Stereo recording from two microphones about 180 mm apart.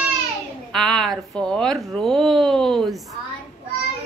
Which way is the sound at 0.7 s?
Centre (ahead or behind).